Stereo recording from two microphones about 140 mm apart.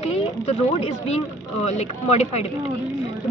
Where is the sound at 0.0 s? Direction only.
50° left (ahead or behind).